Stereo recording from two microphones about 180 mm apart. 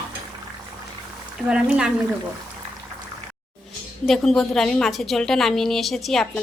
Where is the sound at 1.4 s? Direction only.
5° right (ahead or behind).